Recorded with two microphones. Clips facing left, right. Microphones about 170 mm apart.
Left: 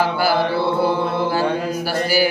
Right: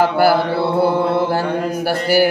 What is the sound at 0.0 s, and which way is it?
Mantra, 60° right (ahead or behind).